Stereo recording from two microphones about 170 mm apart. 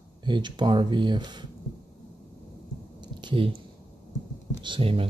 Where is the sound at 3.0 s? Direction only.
30° right (ahead or behind).